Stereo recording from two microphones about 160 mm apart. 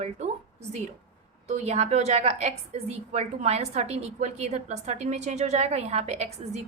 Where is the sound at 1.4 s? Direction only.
45° right (ahead or behind).